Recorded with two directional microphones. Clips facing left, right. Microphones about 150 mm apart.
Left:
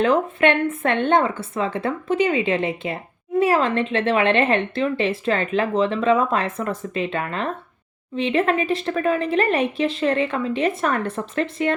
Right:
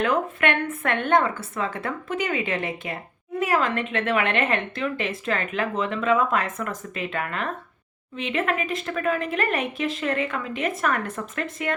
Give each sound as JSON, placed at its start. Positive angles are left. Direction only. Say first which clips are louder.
{"t": 0.0, "sound": "speech", "louder": "left 5 dB", "side_deg": 30}